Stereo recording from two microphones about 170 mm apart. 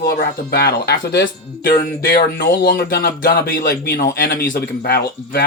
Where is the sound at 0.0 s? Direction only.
65° left (ahead or behind).